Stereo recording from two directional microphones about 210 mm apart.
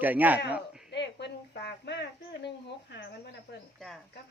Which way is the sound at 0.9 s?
55° left (ahead or behind).